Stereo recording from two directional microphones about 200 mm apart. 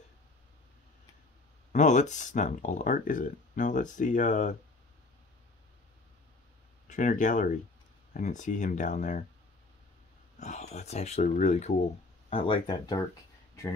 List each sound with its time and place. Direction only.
1.7 s speech: 35° left (ahead or behind)
6.9 s speech: 40° left (ahead or behind)
10.4 s speech: 35° left (ahead or behind)